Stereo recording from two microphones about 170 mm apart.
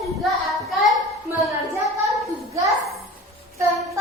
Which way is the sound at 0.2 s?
Centre (ahead or behind).